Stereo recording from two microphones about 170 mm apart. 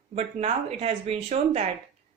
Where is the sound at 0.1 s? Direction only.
40° right (ahead or behind).